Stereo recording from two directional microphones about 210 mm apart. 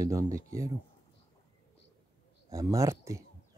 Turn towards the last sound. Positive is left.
turn(degrees=-15)  # may be behind; listen again after turning